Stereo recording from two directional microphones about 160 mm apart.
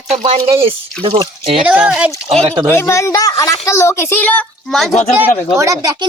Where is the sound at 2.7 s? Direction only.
20° left (ahead or behind); by 4.9 s centre (ahead or behind).